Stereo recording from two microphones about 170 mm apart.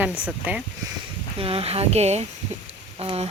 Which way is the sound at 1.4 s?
35° right (ahead or behind).